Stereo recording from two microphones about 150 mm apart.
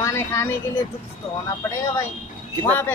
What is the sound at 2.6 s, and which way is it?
Speech, 15° left (ahead or behind).